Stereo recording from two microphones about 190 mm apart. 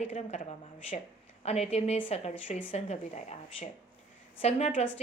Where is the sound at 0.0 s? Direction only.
35° left (ahead or behind).